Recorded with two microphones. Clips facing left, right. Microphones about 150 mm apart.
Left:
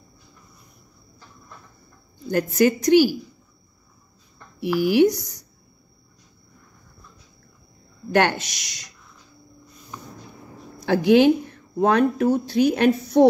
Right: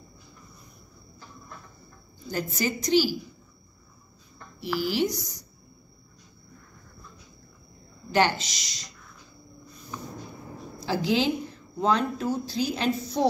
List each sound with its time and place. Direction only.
2.2 s a woman's voice: 60° left (ahead or behind)
4.7 s a woman's voice: 55° left (ahead or behind)
8.1 s a woman's voice: 60° left (ahead or behind)
10.9 s a woman's voice: 60° left (ahead or behind)